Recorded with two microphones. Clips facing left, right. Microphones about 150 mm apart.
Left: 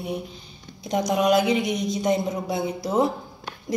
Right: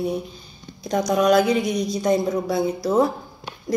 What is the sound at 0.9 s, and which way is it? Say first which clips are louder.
A woman's voice: right 2 dB; 20° left (ahead or behind).